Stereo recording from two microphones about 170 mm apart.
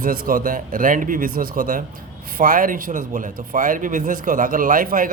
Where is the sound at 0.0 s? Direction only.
55° right (ahead or behind).